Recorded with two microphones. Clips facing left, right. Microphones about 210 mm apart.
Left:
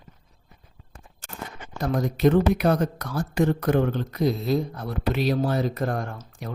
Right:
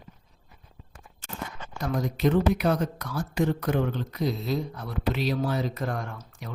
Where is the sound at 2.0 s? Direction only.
55° left (ahead or behind).